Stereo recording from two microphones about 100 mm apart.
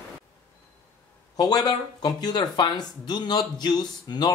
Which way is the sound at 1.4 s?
40° left (ahead or behind).